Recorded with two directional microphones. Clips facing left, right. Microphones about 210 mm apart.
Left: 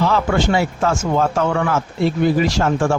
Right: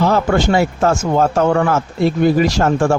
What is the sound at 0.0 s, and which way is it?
Speech, 45° right (ahead or behind).